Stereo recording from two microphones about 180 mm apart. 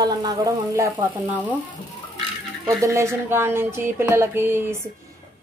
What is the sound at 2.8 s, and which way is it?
Speech, 15° right (ahead or behind).